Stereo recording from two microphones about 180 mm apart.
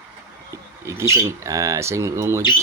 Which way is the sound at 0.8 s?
15° right (ahead or behind).